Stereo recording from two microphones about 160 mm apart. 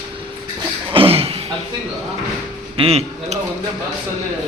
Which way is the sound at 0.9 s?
35° right (ahead or behind).